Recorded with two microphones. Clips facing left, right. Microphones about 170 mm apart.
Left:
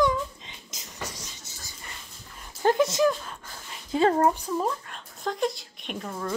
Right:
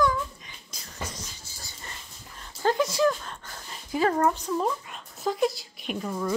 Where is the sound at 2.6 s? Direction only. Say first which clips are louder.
Left 2 dB; 20° left (ahead or behind).